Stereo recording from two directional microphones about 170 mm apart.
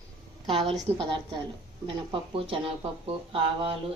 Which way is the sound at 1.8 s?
30° right (ahead or behind).